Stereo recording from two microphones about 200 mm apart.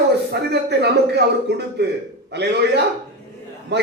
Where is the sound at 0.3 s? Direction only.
55° right (ahead or behind).